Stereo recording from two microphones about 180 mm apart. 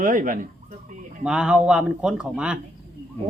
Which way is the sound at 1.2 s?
5° right (ahead or behind).